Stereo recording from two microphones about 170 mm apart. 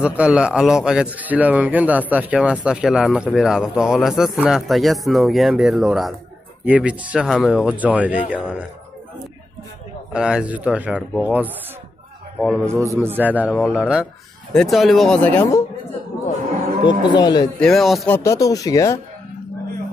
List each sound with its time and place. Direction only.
0.0 s a man's voice: 5° right (ahead or behind)
10.1 s a man's voice: 5° right (ahead or behind)
12.6 s a man's voice: 15° right (ahead or behind); by 15.6 s 10° left (ahead or behind)
16.8 s speech: 25° left (ahead or behind)
17.6 s a man's voice: centre (ahead or behind)
18.1 s speech: 15° left (ahead or behind)